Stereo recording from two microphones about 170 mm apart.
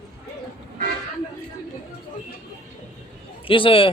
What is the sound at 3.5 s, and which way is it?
Speech, 30° left (ahead or behind).